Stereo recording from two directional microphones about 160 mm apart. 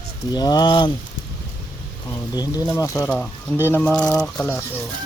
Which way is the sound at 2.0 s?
25° left (ahead or behind).